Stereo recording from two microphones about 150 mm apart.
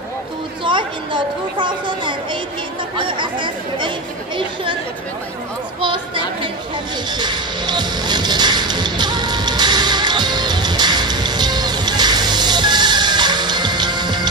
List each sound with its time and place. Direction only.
0.7 s speech: 30° right (ahead or behind)
5.8 s speech: 35° right (ahead or behind)
7.1 s music: 30° right (ahead or behind)